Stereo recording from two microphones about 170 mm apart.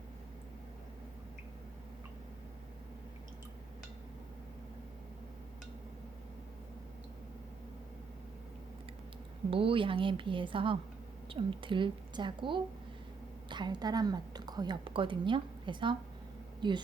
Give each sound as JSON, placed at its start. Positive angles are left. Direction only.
{"t": 9.5, "sound": "a woman's voice", "side_deg": -30}